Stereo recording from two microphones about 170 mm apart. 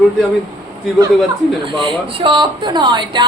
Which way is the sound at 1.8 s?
30° right (ahead or behind).